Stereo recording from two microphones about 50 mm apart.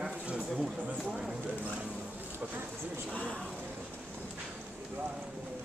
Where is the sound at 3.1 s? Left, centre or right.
Left.